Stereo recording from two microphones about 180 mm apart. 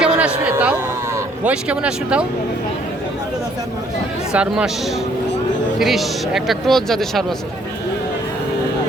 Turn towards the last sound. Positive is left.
turn(degrees=0)  # may be behind; listen again after turning